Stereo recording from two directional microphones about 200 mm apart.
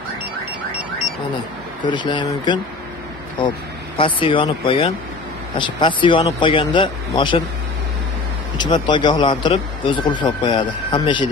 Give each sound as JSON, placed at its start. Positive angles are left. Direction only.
{"t": 1.9, "sound": "speech", "side_deg": 25}
{"t": 8.5, "sound": "speech", "side_deg": 20}